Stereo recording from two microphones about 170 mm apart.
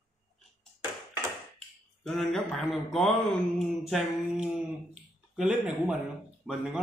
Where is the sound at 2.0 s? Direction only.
5° left (ahead or behind).